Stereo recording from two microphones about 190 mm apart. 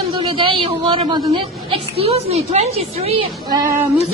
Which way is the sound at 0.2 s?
30° right (ahead or behind).